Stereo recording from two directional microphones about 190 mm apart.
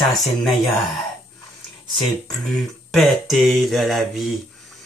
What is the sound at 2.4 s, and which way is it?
Speech, centre (ahead or behind).